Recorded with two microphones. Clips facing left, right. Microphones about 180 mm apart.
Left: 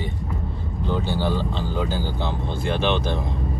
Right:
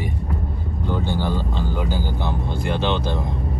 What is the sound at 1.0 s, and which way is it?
Speech, 15° right (ahead or behind).